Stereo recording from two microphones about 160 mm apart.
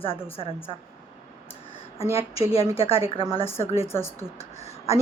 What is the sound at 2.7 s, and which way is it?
A woman's voice, 35° left (ahead or behind).